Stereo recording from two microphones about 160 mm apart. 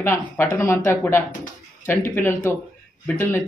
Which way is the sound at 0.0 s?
15° left (ahead or behind).